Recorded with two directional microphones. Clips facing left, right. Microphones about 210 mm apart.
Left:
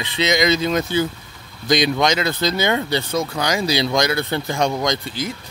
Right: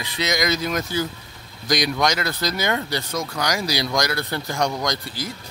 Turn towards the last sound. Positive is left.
turn(degrees=20)  # may be behind; listen again after turning